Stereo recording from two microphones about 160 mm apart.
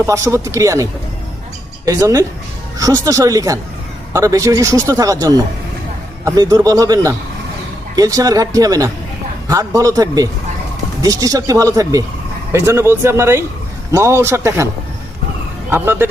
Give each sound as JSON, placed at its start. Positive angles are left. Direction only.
{"t": 0.0, "sound": "speech", "side_deg": -20}
{"t": 15.7, "sound": "speech", "side_deg": -15}